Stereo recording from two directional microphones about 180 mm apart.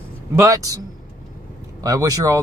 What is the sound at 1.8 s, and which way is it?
Speech, 20° right (ahead or behind).